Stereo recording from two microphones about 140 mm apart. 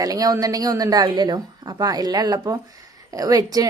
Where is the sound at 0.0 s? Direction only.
25° right (ahead or behind).